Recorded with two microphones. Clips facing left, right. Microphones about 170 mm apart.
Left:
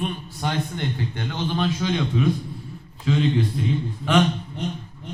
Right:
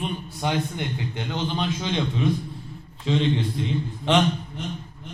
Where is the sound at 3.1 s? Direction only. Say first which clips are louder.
Left 1 dB; 25° right (ahead or behind).